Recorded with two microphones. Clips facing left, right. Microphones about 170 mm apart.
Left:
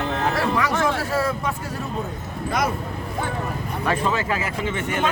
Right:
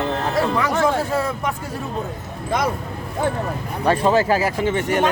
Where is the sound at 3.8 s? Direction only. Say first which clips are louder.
Right 7 dB; 35° right (ahead or behind).